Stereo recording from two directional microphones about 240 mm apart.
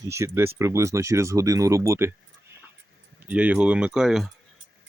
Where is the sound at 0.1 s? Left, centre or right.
Centre.